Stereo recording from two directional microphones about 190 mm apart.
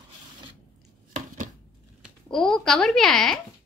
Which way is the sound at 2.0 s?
Centre (ahead or behind).